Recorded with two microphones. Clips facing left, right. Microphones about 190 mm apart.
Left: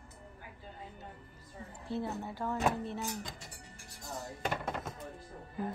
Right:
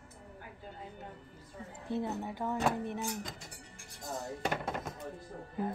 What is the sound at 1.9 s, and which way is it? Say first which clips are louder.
Speech: right 2 dB; 20° right (ahead or behind).